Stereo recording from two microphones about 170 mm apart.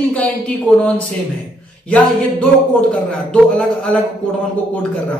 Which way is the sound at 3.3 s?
5° left (ahead or behind).